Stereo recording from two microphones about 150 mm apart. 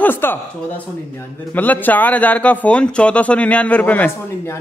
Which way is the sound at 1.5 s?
10° left (ahead or behind).